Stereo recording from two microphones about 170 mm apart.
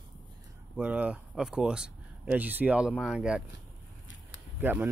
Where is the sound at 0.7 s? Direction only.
5° right (ahead or behind).